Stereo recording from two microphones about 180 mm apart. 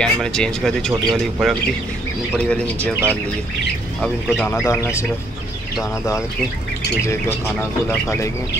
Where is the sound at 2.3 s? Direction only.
5° left (ahead or behind).